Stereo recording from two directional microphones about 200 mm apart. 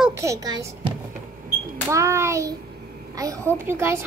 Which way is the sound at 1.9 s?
15° right (ahead or behind).